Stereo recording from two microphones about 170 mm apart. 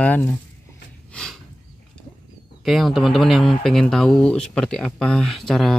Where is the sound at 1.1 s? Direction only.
5° left (ahead or behind).